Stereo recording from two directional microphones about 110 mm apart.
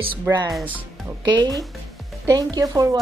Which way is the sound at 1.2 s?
40° right (ahead or behind).